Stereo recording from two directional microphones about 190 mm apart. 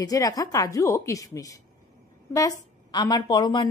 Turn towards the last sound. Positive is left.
turn(degrees=25)  # may be behind; listen again after turning